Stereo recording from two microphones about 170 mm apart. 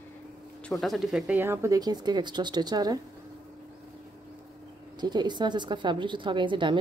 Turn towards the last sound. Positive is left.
turn(degrees=-30)  # may be behind; listen again after turning